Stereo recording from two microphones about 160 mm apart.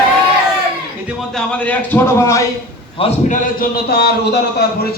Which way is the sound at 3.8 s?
90° left.